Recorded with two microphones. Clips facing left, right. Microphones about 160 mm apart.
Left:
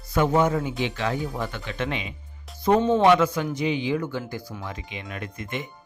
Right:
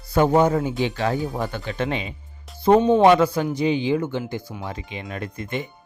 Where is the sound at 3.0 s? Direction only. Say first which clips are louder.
Right 3 dB; 35° right (ahead or behind).